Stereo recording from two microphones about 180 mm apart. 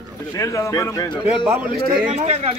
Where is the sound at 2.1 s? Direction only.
40° right (ahead or behind).